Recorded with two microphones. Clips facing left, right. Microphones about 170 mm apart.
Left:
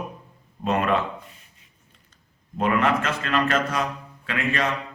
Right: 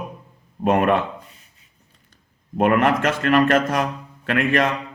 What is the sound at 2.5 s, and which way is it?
A man's voice, 60° right (ahead or behind).